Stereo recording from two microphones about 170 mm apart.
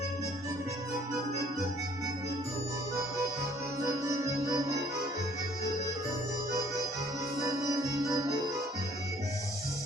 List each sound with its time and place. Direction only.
4.1 s music: 20° right (ahead or behind)
7.4 s music: 20° right (ahead or behind)